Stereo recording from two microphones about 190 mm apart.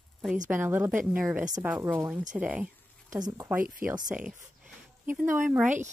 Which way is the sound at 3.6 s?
45° right (ahead or behind).